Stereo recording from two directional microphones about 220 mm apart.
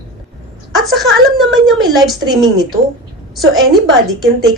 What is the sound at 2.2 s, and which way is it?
Speech, 20° right (ahead or behind).